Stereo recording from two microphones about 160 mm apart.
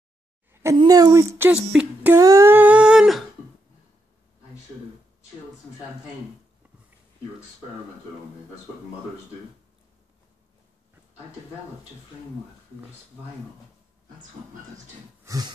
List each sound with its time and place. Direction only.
0.5 s a sound: 15° right (ahead or behind)
0.7 s a woman's voice: 25° right (ahead or behind)
1.5 s speech: 5° right (ahead or behind)
2.1 s humming: 20° right (ahead or behind); by 3.3 s centre (ahead or behind)
15.2 s a woman's voice: 25° right (ahead or behind)